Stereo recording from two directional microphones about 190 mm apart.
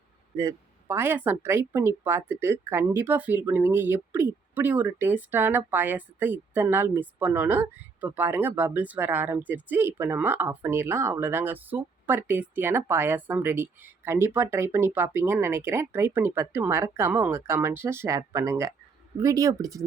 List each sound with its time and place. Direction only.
0.3 s a woman's voice: 15° right (ahead or behind)